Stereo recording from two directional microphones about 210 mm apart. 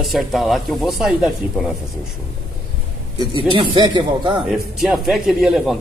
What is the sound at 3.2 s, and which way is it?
Speech, 20° right (ahead or behind).